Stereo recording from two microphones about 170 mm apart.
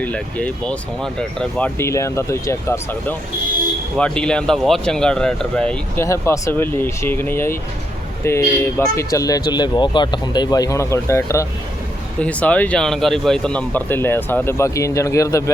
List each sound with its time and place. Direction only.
0.0 s speech: 10° left (ahead or behind)
6.0 s speech: 15° left (ahead or behind)